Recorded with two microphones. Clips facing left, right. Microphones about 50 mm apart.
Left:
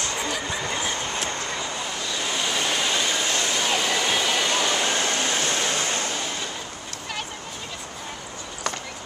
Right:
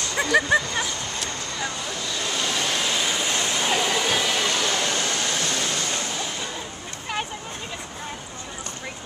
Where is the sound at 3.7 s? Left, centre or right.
Centre.